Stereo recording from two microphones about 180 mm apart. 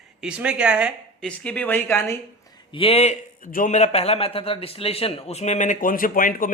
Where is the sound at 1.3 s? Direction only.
10° left (ahead or behind).